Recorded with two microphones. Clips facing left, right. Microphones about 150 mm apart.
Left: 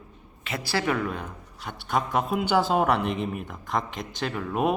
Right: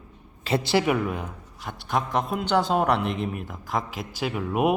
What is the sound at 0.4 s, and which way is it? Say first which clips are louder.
A man's voice: right 5 dB; 25° right (ahead or behind).